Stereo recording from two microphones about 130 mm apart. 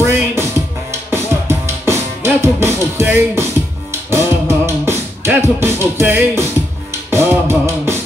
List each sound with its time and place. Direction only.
0.0 s music: 20° right (ahead or behind)
4.1 s beatboxing: 20° right (ahead or behind)
6.9 s music: 20° right (ahead or behind)